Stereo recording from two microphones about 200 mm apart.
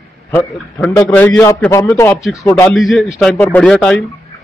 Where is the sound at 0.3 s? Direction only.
10° left (ahead or behind).